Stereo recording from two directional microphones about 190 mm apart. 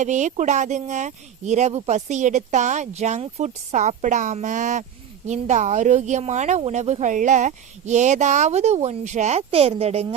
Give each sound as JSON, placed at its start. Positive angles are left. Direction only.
{"t": 0.0, "sound": "speech", "side_deg": -40}